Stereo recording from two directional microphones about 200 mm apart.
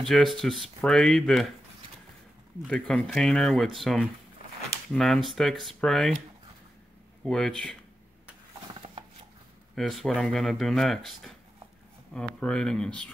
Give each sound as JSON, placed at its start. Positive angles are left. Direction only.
{"t": 0.0, "sound": "speech", "side_deg": 0}
{"t": 2.6, "sound": "speech", "side_deg": 5}
{"t": 7.2, "sound": "speech", "side_deg": 5}
{"t": 9.8, "sound": "speech", "side_deg": 0}